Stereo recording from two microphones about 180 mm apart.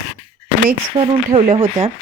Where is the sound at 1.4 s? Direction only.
30° right (ahead or behind).